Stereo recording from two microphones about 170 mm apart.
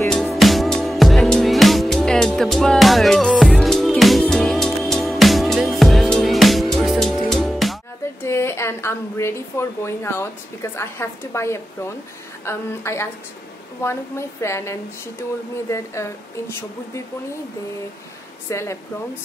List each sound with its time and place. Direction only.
0.1 s music: centre (ahead or behind)
8.2 s a woman's voice: 15° left (ahead or behind)
18.5 s a woman's voice: 15° left (ahead or behind)